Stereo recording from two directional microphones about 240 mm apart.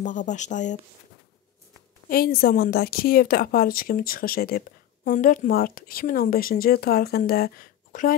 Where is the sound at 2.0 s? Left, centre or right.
Left.